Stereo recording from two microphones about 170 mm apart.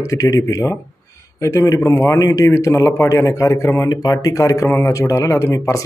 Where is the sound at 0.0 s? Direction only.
20° left (ahead or behind).